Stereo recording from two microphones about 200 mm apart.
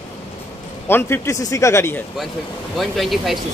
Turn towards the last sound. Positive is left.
turn(degrees=0)  # may be behind; listen again after turning